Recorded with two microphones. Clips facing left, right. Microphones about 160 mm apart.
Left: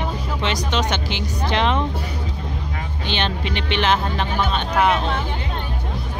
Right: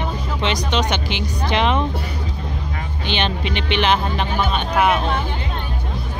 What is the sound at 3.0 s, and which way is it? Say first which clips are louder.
Speech: right 2 dB; 15° right (ahead or behind).